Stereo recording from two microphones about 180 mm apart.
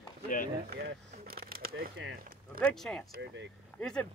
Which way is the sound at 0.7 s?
55° right (ahead or behind).